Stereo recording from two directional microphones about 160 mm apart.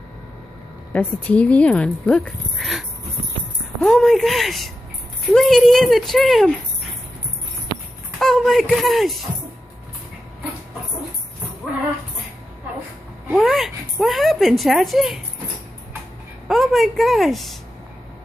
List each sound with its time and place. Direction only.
0.9 s speech: 10° left (ahead or behind)
3.8 s speech: centre (ahead or behind)
8.2 s speech: 5° left (ahead or behind)
13.4 s speech: centre (ahead or behind)
16.4 s speech: centre (ahead or behind)